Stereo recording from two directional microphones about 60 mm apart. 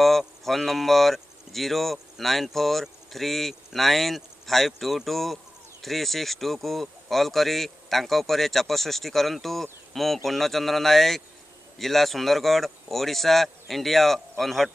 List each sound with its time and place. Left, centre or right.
0.0 s speech: centre